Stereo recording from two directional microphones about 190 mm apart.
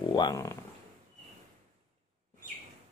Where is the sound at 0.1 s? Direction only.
20° left (ahead or behind).